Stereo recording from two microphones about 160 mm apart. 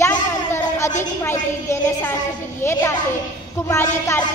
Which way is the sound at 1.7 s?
15° left (ahead or behind).